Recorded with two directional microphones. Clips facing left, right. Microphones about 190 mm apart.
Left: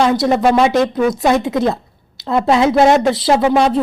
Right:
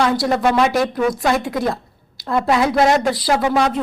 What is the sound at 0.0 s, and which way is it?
A woman's voice, 20° left (ahead or behind).